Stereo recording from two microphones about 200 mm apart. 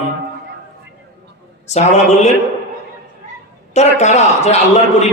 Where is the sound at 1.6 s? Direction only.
35° left (ahead or behind).